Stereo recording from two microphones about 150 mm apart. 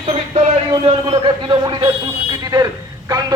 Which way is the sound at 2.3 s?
25° right (ahead or behind).